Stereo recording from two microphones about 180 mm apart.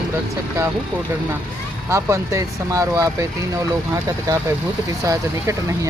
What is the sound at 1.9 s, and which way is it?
Speech, 15° right (ahead or behind).